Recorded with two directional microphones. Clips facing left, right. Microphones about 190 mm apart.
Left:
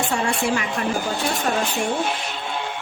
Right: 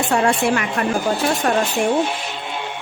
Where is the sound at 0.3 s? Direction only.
60° right (ahead or behind).